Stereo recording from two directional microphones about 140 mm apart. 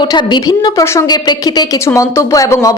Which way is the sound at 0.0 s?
35° left (ahead or behind).